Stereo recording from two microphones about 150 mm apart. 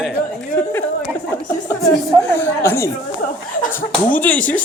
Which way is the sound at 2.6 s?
20° left (ahead or behind).